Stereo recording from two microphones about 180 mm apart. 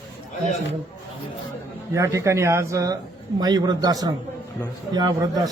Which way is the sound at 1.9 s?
15° right (ahead or behind).